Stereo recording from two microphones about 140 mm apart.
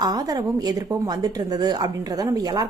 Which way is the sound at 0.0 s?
25° right (ahead or behind).